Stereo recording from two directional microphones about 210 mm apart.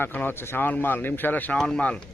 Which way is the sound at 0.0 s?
10° left (ahead or behind).